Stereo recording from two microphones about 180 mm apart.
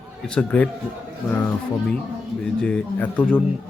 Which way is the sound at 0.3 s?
5° left (ahead or behind).